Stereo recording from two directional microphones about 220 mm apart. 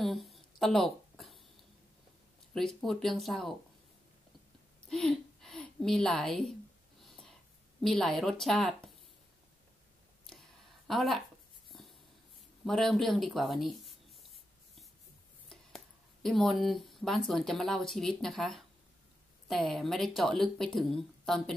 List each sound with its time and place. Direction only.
0.0 s a sound: centre (ahead or behind)
2.5 s speech: centre (ahead or behind)
4.8 s a woman's voice: centre (ahead or behind)
7.0 s a sound: centre (ahead or behind)
7.8 s speech: centre (ahead or behind)
10.9 s speech: centre (ahead or behind)
11.7 s a sound: centre (ahead or behind)
12.6 s speech: centre (ahead or behind)
15.4 s speech: centre (ahead or behind)